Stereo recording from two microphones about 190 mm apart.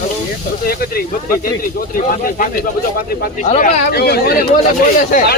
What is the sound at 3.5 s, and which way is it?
Speech, 50° left (ahead or behind).